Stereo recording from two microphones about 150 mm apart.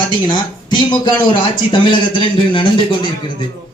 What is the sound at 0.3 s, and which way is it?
Speech, 30° left (ahead or behind).